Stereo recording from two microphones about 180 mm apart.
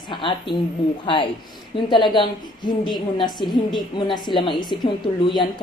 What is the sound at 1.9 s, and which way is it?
A woman's voice, 25° left (ahead or behind).